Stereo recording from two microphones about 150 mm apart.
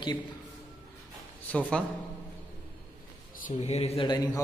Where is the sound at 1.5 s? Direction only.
10° left (ahead or behind).